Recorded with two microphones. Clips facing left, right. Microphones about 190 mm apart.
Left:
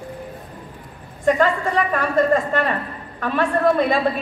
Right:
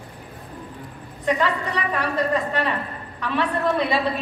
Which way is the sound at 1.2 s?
45° left (ahead or behind).